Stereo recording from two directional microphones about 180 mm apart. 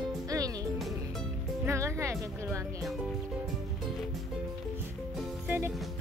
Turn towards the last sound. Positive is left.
turn(degrees=-10)  # may be behind; listen again after turning